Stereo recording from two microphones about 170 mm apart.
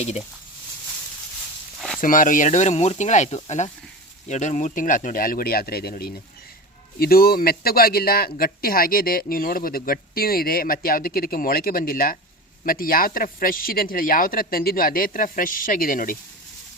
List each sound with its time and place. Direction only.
2.0 s speech: 50° left (ahead or behind)